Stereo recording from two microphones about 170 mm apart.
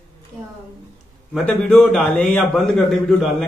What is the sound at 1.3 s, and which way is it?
A man's voice, 5° left (ahead or behind).